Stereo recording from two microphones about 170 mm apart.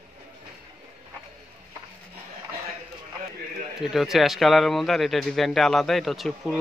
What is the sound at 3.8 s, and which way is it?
Speech, centre (ahead or behind).